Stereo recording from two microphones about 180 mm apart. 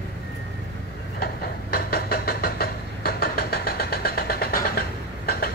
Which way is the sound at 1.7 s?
60° left (ahead or behind).